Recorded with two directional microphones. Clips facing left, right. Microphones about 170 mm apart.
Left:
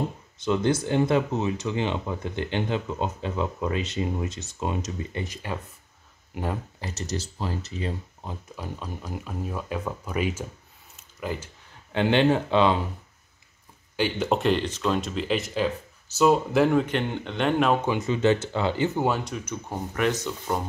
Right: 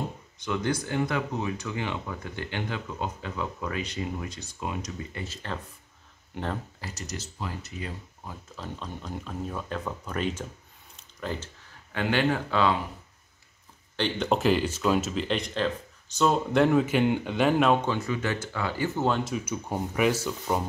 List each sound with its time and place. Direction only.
0.5 s speech: 25° left (ahead or behind); by 6.6 s 10° left (ahead or behind)
6.8 s speech: 25° left (ahead or behind)
8.5 s speech: 10° left (ahead or behind)
11.0 s a sound: 10° left (ahead or behind)
11.9 s speech: 25° left (ahead or behind)
13.9 s speech: 10° left (ahead or behind)
17.8 s speech: 20° left (ahead or behind)
18.9 s speech: 10° left (ahead or behind)
19.2 s speech: 5° right (ahead or behind)